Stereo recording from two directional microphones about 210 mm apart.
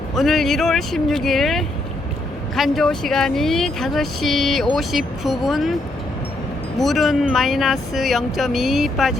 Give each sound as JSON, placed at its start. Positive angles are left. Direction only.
{"t": 0.2, "sound": "speech", "side_deg": 0}
{"t": 6.7, "sound": "speech", "side_deg": 0}